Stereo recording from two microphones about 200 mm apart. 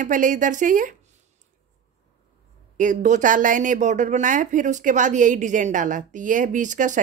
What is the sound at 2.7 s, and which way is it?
A woman's voice, 40° right (ahead or behind).